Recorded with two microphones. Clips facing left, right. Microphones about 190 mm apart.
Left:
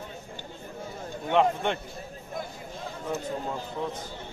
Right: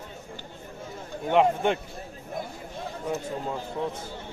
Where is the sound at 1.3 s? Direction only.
5° right (ahead or behind).